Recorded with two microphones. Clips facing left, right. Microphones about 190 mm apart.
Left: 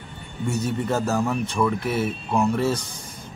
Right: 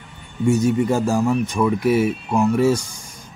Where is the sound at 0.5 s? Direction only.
10° right (ahead or behind).